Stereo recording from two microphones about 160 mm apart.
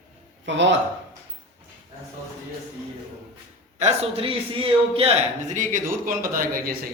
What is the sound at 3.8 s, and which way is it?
A man's voice, 40° right (ahead or behind).